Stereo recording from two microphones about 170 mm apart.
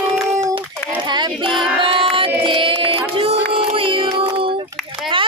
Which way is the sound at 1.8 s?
30° right (ahead or behind).